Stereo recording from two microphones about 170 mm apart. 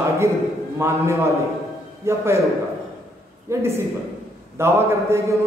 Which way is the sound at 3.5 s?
15° right (ahead or behind).